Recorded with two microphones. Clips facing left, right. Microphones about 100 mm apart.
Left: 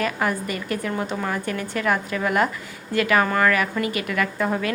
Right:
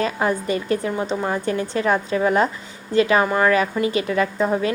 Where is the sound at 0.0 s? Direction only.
30° right (ahead or behind).